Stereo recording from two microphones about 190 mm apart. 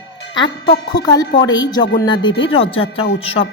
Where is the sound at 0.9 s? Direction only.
20° left (ahead or behind).